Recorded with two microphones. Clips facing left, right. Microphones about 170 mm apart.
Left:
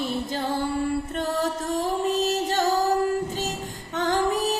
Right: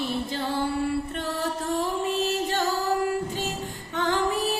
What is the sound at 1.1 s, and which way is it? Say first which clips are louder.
Music: left 3 dB; 45° left (ahead or behind).